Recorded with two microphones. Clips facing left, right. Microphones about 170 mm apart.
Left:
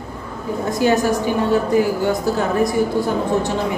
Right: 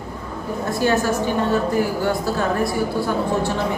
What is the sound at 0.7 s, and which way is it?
Speech, 15° left (ahead or behind).